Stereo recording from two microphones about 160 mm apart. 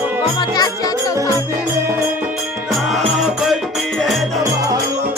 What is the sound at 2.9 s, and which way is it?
Music, centre (ahead or behind).